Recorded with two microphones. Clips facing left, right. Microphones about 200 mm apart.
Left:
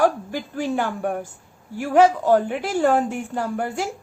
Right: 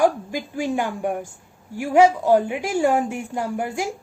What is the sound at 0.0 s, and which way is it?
A woman's voice, 10° right (ahead or behind).